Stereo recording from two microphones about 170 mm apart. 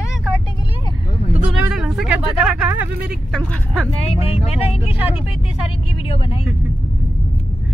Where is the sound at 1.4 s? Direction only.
5° right (ahead or behind).